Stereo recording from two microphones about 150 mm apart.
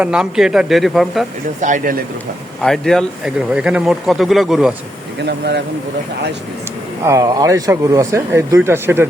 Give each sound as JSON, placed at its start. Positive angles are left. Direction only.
{"t": 0.0, "sound": "speech", "side_deg": -5}
{"t": 1.6, "sound": "speech", "side_deg": -65}
{"t": 2.6, "sound": "speech", "side_deg": 5}
{"t": 7.0, "sound": "speech", "side_deg": -20}